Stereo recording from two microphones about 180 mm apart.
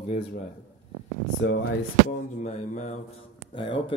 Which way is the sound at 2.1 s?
40° left (ahead or behind).